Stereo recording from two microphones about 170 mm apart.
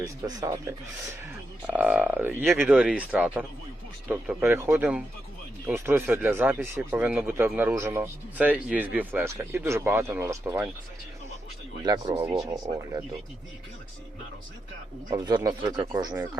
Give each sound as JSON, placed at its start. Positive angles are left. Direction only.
{"t": 0.3, "sound": "speech", "side_deg": -20}
{"t": 1.6, "sound": "speech", "side_deg": -10}
{"t": 11.8, "sound": "speech", "side_deg": -25}
{"t": 15.1, "sound": "speech", "side_deg": -25}